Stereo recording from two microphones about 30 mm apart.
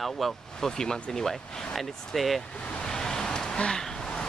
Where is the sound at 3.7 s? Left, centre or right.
Left.